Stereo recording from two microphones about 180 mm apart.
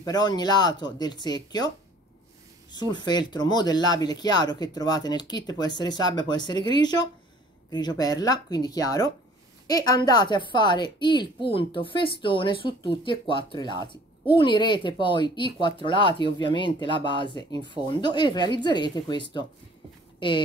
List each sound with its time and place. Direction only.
0.0 s a woman's voice: 20° left (ahead or behind)
2.7 s a woman's voice: 25° left (ahead or behind)